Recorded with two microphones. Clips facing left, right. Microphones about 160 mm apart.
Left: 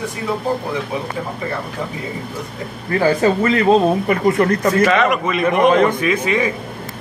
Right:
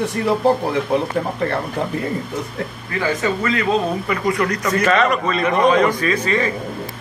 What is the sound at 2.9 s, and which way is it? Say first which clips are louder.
Speech: left 6 dB; 35° left (ahead or behind).